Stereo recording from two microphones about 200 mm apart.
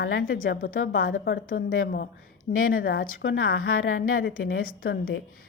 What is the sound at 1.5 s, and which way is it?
A woman's voice, 45° left (ahead or behind).